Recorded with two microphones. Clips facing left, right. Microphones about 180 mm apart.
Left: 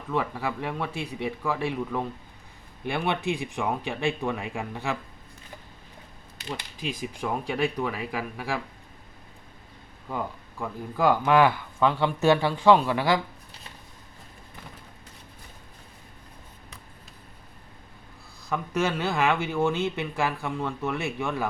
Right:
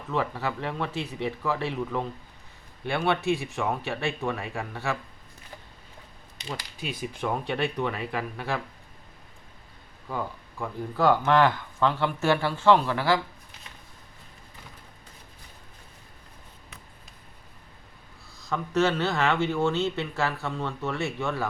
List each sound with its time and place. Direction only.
0.1 s speech: 10° left (ahead or behind)
7.2 s speech: 10° left (ahead or behind)
10.9 s speech: 10° left (ahead or behind)
18.4 s speech: 15° left (ahead or behind)